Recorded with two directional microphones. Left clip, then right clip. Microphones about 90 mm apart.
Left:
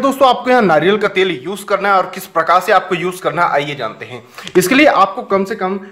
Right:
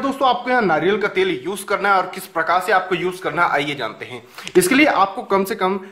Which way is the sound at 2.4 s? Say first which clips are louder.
Left 5 dB; 20° left (ahead or behind).